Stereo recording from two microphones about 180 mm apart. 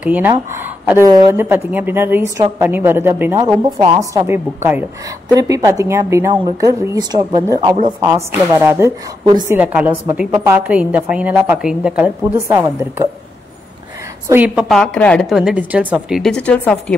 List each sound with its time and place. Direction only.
0.0 s a woman's voice: 10° right (ahead or behind)
9.6 s a woman's voice: 10° right (ahead or behind)
14.3 s a woman's voice: 10° right (ahead or behind); by 16.9 s 5° left (ahead or behind)